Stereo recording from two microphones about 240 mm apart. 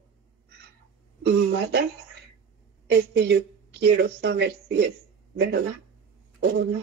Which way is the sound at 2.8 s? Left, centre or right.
Right.